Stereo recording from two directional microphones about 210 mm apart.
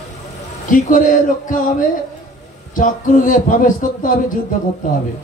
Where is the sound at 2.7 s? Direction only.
40° left (ahead or behind).